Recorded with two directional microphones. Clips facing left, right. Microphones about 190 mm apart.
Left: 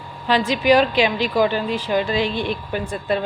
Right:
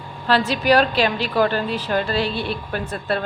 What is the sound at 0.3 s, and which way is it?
A woman's voice, 15° left (ahead or behind).